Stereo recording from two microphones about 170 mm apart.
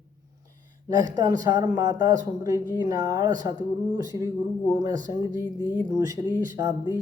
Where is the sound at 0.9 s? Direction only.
20° right (ahead or behind).